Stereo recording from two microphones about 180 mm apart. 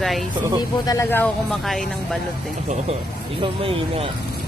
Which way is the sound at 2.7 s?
30° right (ahead or behind).